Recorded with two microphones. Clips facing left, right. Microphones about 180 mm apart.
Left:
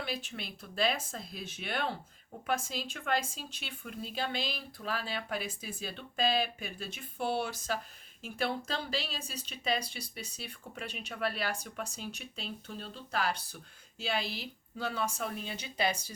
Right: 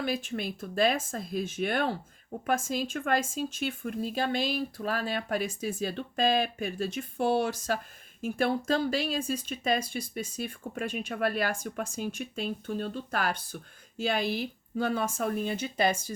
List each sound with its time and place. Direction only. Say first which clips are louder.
0.0 s speech: right 8 dB; 45° right (ahead or behind)